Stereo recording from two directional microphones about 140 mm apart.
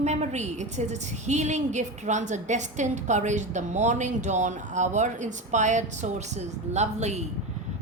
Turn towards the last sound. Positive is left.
turn(degrees=-55)  # may be behind; listen again after turning